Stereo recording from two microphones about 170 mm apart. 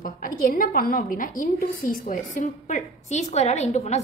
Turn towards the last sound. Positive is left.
turn(degrees=40)  # may be behind; listen again after turning